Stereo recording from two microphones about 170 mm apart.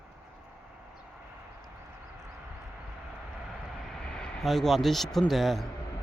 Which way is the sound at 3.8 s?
5° left (ahead or behind).